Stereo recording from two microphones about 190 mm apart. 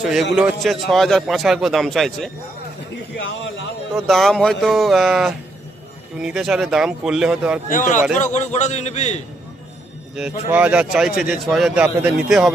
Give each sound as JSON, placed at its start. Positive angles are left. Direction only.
{"t": 0.0, "sound": "a man's voice", "side_deg": 0}
{"t": 2.9, "sound": "a sound", "side_deg": 70}
{"t": 3.9, "sound": "a man's voice", "side_deg": 0}
{"t": 7.7, "sound": "a man's voice", "side_deg": 40}
{"t": 10.5, "sound": "a man's voice", "side_deg": -10}